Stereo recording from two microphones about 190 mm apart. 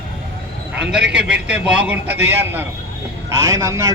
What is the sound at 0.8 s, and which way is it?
A man's voice, 5° right (ahead or behind).